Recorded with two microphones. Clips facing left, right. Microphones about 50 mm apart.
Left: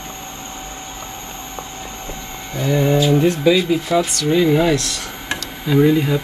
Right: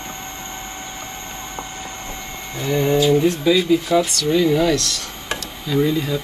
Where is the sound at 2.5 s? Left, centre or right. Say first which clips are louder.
Left 2 dB; left.